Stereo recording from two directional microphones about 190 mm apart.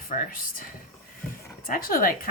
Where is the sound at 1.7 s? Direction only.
50° left (ahead or behind).